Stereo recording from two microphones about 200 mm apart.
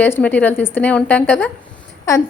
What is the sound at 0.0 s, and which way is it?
A woman's voice, 10° left (ahead or behind).